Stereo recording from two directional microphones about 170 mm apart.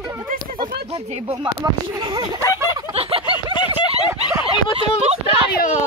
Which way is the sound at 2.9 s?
35° right (ahead or behind).